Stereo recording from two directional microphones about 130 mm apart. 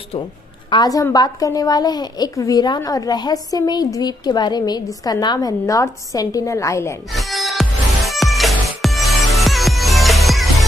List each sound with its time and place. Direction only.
0.7 s a woman's voice: 35° left (ahead or behind)
7.1 s music: centre (ahead or behind)